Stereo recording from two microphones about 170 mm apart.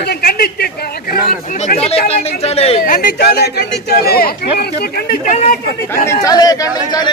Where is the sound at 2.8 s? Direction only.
55° left (ahead or behind).